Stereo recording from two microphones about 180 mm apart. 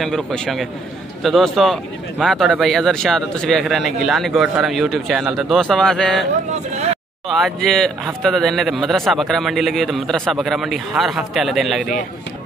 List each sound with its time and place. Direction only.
0.0 s speech: centre (ahead or behind)
6.7 s a sound: 35° right (ahead or behind)
7.2 s speech: centre (ahead or behind)